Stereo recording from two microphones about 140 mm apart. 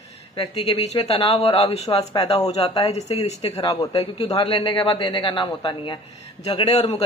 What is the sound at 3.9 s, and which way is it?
Speech, 45° left (ahead or behind).